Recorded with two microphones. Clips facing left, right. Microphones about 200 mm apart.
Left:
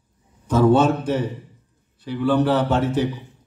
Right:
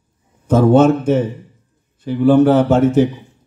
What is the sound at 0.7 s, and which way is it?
A man's voice, 45° right (ahead or behind).